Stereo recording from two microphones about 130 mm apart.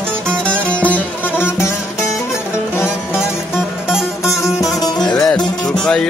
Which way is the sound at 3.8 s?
5° right (ahead or behind).